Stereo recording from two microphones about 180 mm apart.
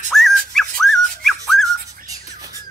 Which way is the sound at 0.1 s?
Centre (ahead or behind).